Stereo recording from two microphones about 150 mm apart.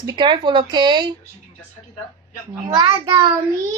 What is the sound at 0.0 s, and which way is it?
A child's voice, 30° right (ahead or behind).